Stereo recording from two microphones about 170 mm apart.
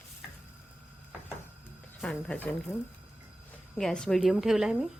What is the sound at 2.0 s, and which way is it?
Speech, 5° left (ahead or behind).